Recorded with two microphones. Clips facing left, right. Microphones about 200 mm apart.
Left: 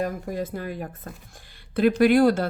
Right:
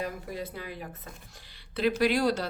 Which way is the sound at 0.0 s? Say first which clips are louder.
Left 7 dB; 50° left (ahead or behind).